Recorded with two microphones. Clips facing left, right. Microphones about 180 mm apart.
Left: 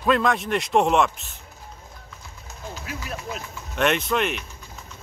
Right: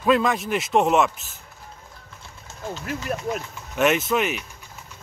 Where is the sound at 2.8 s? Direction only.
45° right (ahead or behind).